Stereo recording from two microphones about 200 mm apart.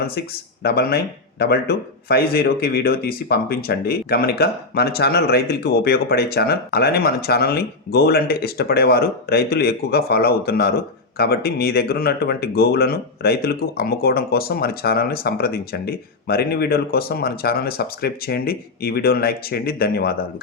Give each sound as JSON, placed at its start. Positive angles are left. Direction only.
{"t": 0.1, "sound": "speech", "side_deg": 50}